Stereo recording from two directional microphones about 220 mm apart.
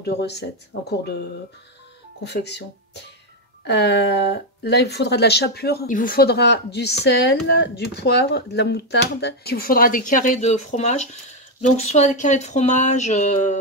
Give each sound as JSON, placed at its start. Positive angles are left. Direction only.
{"t": 0.0, "sound": "speech", "side_deg": 50}
{"t": 2.2, "sound": "speech", "side_deg": 50}